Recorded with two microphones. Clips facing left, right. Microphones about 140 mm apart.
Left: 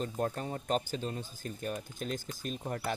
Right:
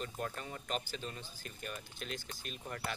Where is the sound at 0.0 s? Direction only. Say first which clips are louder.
Left 7 dB; 35° left (ahead or behind).